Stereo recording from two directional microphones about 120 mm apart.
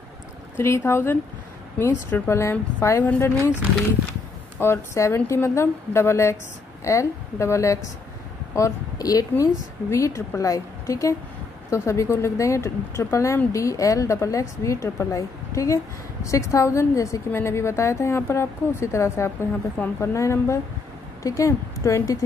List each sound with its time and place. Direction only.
0.6 s a woman's voice: 25° left (ahead or behind)
4.6 s a woman's voice: 25° left (ahead or behind)